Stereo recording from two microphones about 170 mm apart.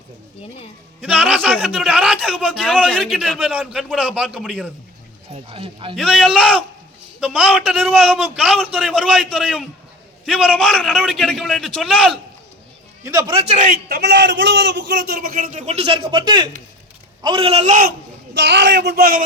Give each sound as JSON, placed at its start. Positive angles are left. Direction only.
{"t": 1.0, "sound": "a man's voice", "side_deg": -5}
{"t": 5.3, "sound": "speech", "side_deg": -35}
{"t": 6.0, "sound": "a man's voice", "side_deg": 0}
{"t": 13.1, "sound": "a man's voice", "side_deg": -20}
{"t": 13.3, "sound": "speech", "side_deg": -40}
{"t": 13.8, "sound": "a man's voice", "side_deg": -75}
{"t": 18.3, "sound": "speech", "side_deg": -90}